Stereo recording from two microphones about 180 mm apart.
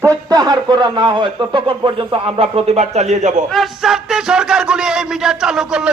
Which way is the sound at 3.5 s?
Centre (ahead or behind).